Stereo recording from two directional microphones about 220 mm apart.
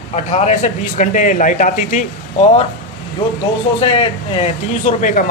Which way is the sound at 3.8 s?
25° left (ahead or behind).